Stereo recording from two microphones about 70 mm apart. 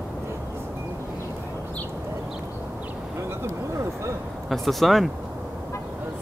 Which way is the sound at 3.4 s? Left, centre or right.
Right.